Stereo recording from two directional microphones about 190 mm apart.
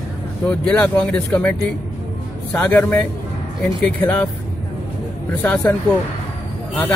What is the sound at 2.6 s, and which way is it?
Speech, 10° left (ahead or behind).